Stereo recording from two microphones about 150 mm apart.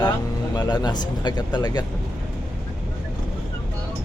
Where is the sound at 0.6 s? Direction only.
30° left (ahead or behind).